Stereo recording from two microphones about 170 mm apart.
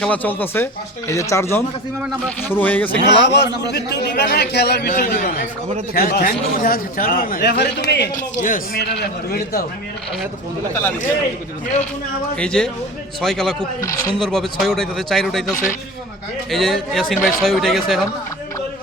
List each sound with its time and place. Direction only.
0.0 s speech: 10° left (ahead or behind)
3.1 s a man's voice: 90° left; by 4.9 s 75° left (ahead or behind)
4.9 s a man's voice: 50° left (ahead or behind); by 8.1 s 80° left
8.1 s speech: 55° left (ahead or behind)
8.8 s a man's voice: 80° left
12.4 s speech: 5° left (ahead or behind)
13.8 s speech: 20° left (ahead or behind)
14.2 s speech: centre (ahead or behind)